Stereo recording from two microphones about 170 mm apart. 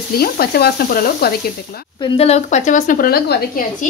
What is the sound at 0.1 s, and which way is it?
Sizzle, 65° left (ahead or behind).